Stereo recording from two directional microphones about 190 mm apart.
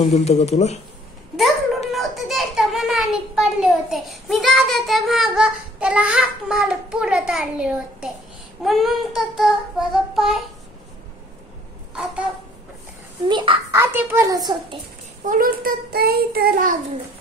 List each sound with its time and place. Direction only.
0.0 s speech: 35° left (ahead or behind)
1.9 s a child's voice: centre (ahead or behind)
8.6 s child singing: centre (ahead or behind)
11.9 s a sound: 5° right (ahead or behind)
13.3 s a child's voice: 25° right (ahead or behind)
13.7 s a child's voice: 15° right (ahead or behind)
15.2 s child singing: 50° right (ahead or behind)